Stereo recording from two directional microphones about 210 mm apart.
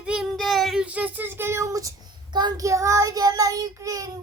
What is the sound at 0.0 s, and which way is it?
Child singing, 5° right (ahead or behind).